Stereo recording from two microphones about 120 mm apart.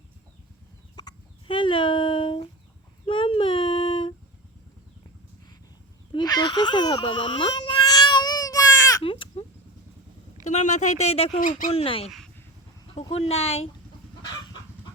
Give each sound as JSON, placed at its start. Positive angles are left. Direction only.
{"t": 0.9, "sound": "chicken", "side_deg": 40}
{"t": 3.1, "sound": "child singing", "side_deg": 45}
{"t": 6.1, "sound": "baby cry", "side_deg": 35}
{"t": 9.0, "sound": "baby cry", "side_deg": 50}
{"t": 10.4, "sound": "speech", "side_deg": 80}
{"t": 11.7, "sound": "speech", "side_deg": 55}
{"t": 14.2, "sound": "chicken", "side_deg": 40}